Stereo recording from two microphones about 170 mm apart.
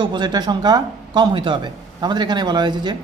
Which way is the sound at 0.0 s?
25° right (ahead or behind).